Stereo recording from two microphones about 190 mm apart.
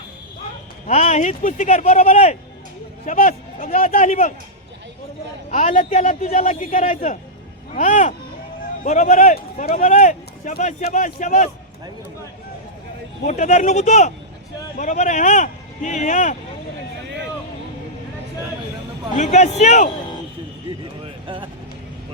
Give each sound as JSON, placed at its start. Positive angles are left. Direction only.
{"t": 0.9, "sound": "a man's voice", "side_deg": 35}
{"t": 5.5, "sound": "a man's voice", "side_deg": 45}
{"t": 13.2, "sound": "a man's voice", "side_deg": 40}
{"t": 19.1, "sound": "a man's voice", "side_deg": 40}
{"t": 21.0, "sound": "a sound", "side_deg": -25}